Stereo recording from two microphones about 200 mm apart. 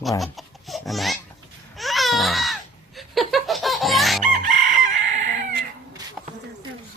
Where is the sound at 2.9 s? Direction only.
Centre (ahead or behind).